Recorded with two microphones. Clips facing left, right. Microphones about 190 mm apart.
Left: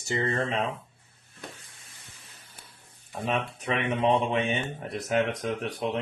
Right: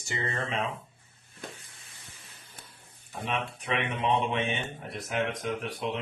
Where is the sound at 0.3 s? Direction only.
35° left (ahead or behind).